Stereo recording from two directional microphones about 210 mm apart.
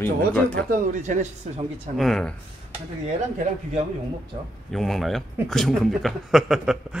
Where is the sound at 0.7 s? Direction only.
35° right (ahead or behind).